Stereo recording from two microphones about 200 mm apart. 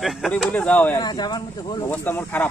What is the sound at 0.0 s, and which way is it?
Speech, centre (ahead or behind).